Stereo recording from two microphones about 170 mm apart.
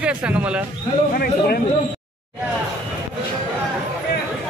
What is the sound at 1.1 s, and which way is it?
Speech, 60° left (ahead or behind).